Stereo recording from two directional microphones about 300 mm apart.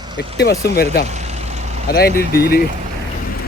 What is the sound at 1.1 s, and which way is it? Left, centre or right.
Vehicle, right.